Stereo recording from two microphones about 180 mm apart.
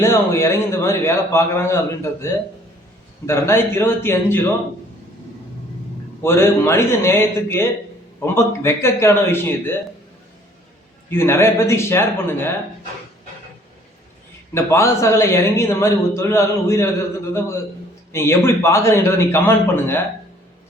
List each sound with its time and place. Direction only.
0.0 s a man's voice: 15° left (ahead or behind)
6.2 s a man's voice: 15° left (ahead or behind)
11.1 s a man's voice: 15° left (ahead or behind)
14.5 s a man's voice: 15° left (ahead or behind)
18.1 s a man's voice: 15° left (ahead or behind)